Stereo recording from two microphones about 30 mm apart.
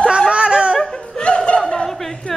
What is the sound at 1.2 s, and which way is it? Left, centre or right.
Snicker, left.